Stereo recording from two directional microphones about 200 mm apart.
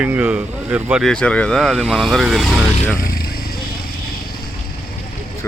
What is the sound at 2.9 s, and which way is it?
Vehicle, 45° left (ahead or behind).